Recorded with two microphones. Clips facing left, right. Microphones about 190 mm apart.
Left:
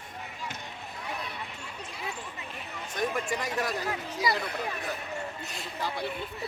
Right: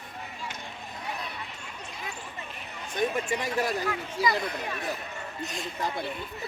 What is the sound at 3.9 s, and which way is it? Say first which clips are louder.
Speech: right 2 dB; 30° left (ahead or behind).